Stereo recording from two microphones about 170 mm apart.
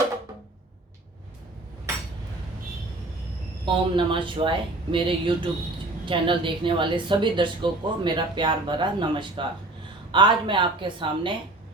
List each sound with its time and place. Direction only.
3.7 s a woman's voice: 30° right (ahead or behind)